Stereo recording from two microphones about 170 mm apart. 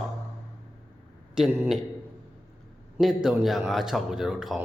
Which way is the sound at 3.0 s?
Centre (ahead or behind).